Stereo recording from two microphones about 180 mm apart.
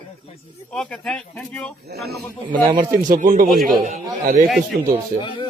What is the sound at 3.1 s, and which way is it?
A man's voice, 50° right (ahead or behind).